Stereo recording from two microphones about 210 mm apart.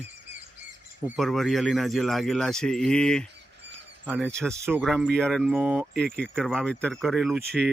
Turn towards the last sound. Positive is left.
turn(degrees=-50)  # may be behind; listen again after turning